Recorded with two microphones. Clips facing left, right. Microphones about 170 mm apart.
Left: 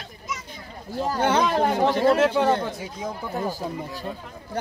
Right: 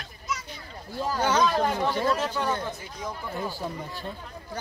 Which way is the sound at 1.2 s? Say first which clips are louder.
Left 2 dB; 60° left (ahead or behind).